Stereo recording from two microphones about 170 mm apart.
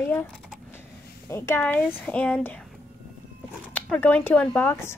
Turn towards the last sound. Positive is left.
turn(degrees=15)  # may be behind; listen again after turning